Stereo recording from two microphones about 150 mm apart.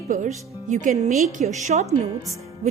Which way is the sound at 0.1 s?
55° right (ahead or behind).